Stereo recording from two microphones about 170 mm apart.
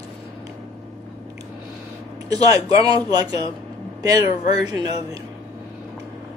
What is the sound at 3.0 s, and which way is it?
A woman's voice, 20° right (ahead or behind).